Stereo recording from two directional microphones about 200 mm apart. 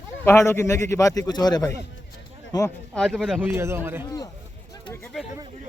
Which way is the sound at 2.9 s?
Centre (ahead or behind).